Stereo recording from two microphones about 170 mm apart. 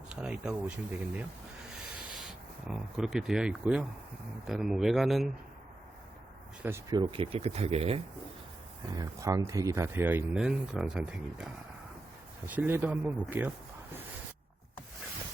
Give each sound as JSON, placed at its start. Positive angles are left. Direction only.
{"t": 0.1, "sound": "speech", "side_deg": -5}
{"t": 2.6, "sound": "speech", "side_deg": -5}
{"t": 6.6, "sound": "speech", "side_deg": -15}
{"t": 7.0, "sound": "speech", "side_deg": -35}
{"t": 9.0, "sound": "speech", "side_deg": -20}
{"t": 12.5, "sound": "speech", "side_deg": -10}